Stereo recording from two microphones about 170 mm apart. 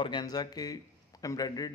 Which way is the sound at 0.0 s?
25° left (ahead or behind).